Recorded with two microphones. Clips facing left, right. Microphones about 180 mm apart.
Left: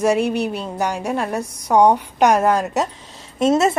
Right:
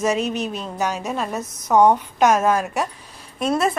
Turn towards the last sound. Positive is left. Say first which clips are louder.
# left 5 dB
turn(degrees=25)  # may be behind; listen again after turning